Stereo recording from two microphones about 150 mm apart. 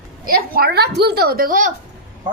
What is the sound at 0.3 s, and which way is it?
A woman's voice, 80° right.